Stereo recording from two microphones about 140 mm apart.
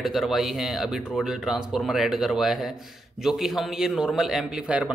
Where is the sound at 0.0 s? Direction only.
Centre (ahead or behind).